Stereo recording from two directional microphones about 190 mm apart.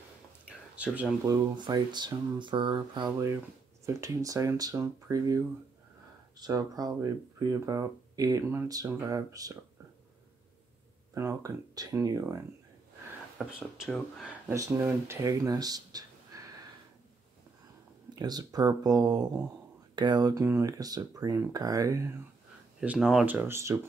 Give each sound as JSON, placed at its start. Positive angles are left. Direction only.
{"t": 0.5, "sound": "a sound", "side_deg": -5}
{"t": 1.2, "sound": "speech", "side_deg": -20}
{"t": 11.1, "sound": "speech", "side_deg": -15}
{"t": 13.4, "sound": "speech", "side_deg": 0}
{"t": 14.5, "sound": "speech", "side_deg": -15}
{"t": 18.1, "sound": "speech", "side_deg": -20}
{"t": 22.8, "sound": "speech", "side_deg": -5}